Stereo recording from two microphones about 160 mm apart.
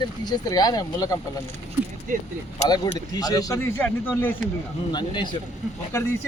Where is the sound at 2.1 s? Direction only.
50° right (ahead or behind).